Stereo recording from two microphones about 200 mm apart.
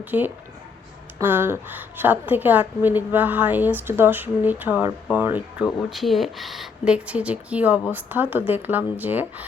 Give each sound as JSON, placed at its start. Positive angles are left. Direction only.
{"t": 0.0, "sound": "a woman's voice", "side_deg": -10}